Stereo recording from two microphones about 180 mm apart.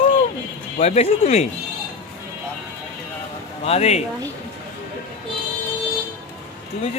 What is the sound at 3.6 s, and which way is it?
Speech, 35° left (ahead or behind).